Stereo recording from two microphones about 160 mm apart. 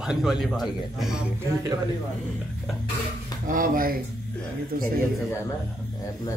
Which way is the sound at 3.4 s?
60° right (ahead or behind).